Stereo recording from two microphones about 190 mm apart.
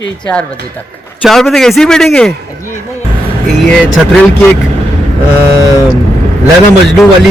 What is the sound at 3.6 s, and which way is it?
Speech, centre (ahead or behind).